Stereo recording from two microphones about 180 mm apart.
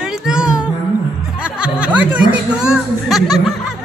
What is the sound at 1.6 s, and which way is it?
Speech, 5° right (ahead or behind).